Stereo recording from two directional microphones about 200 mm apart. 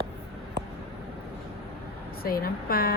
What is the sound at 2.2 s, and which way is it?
Speech, 50° left (ahead or behind).